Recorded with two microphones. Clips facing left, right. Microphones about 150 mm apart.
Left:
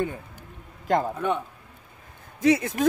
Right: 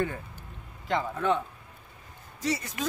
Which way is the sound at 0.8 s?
45° left (ahead or behind).